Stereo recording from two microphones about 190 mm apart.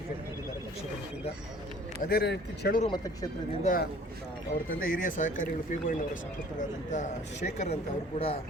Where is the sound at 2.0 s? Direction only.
55° left (ahead or behind).